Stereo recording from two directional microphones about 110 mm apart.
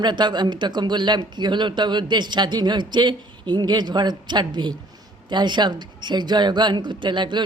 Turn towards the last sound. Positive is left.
turn(degrees=-45)  # may be behind; listen again after turning